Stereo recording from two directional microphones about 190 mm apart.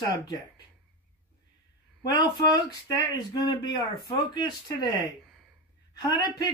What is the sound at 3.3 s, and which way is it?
Speech, 20° left (ahead or behind).